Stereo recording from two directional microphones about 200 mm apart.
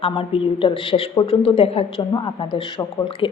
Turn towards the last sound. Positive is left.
turn(degrees=25)  # may be behind; listen again after turning